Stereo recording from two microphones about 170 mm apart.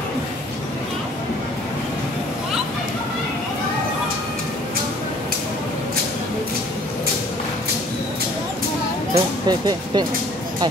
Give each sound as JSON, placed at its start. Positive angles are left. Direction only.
{"t": 9.1, "sound": "speech", "side_deg": -25}